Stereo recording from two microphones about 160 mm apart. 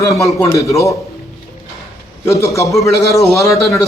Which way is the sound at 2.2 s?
20° left (ahead or behind).